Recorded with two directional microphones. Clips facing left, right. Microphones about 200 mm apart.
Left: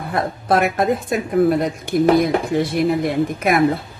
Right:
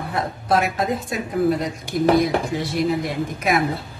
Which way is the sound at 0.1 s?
55° left (ahead or behind).